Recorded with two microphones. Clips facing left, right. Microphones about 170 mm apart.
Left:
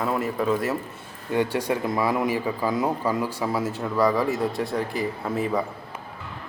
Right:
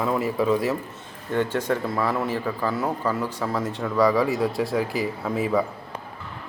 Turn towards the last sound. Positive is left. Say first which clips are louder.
# right 2 dB
turn(degrees=0)  # may be behind; listen again after turning